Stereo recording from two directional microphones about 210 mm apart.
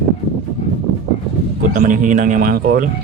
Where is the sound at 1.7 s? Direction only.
40° right (ahead or behind).